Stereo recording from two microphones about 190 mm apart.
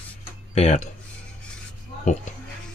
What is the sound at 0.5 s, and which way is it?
Speech, 35° left (ahead or behind).